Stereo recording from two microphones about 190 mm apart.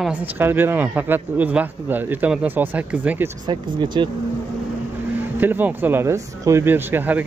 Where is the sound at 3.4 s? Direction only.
25° right (ahead or behind).